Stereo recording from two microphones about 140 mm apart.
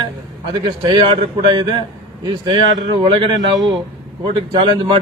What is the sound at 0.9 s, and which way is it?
A man's voice, 35° right (ahead or behind).